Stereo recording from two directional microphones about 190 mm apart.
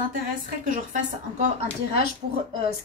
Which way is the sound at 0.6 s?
40° right (ahead or behind).